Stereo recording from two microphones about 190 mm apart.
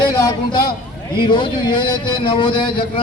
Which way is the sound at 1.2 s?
25° left (ahead or behind).